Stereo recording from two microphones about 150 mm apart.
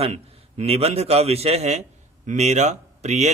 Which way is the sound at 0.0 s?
45° right (ahead or behind).